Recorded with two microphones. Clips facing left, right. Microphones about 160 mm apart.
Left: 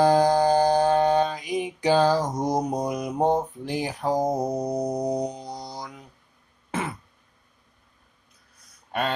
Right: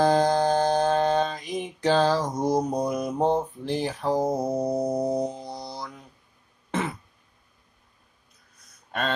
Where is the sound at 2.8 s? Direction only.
15° left (ahead or behind).